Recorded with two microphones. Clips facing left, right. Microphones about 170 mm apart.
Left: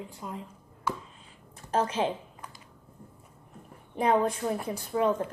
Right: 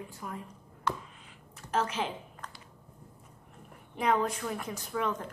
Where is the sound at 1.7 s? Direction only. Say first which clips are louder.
Left 4 dB; 30° left (ahead or behind).